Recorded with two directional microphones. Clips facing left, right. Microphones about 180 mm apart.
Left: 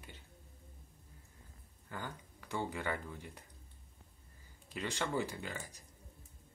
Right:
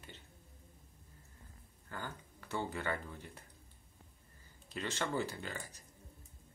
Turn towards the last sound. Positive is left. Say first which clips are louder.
# left 1 dB
turn(degrees=15)  # may be behind; listen again after turning